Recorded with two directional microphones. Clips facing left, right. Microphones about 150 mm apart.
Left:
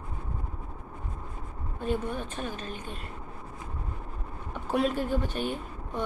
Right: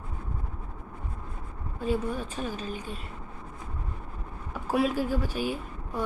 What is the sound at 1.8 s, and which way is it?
Speech, 5° right (ahead or behind).